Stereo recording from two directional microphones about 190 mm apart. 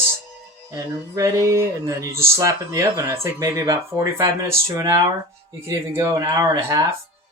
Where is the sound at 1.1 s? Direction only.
15° right (ahead or behind).